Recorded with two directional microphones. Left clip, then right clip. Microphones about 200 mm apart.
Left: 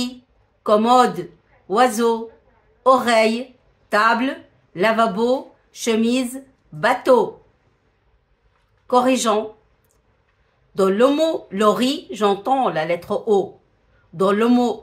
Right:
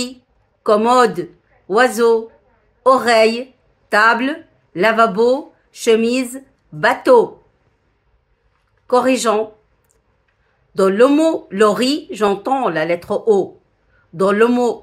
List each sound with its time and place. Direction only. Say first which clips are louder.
0.7 s speech: right 2 dB; 20° right (ahead or behind)
8.8 s speech: right 2 dB; 20° right (ahead or behind)
10.7 s speech: right 4 dB; 20° right (ahead or behind)